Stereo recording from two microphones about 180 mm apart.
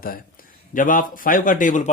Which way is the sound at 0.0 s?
55° left (ahead or behind).